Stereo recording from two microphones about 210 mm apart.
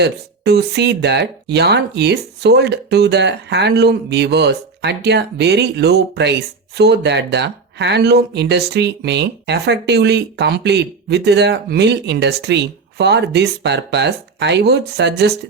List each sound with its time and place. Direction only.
0.0 s speech: 50° right (ahead or behind)